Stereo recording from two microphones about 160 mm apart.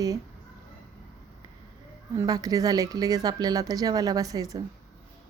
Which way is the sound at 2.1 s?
20° right (ahead or behind).